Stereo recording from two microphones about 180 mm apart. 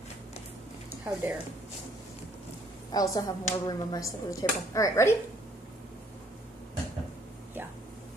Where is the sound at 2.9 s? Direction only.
20° left (ahead or behind).